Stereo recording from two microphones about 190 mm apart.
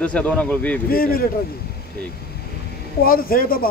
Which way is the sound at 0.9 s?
50° left (ahead or behind).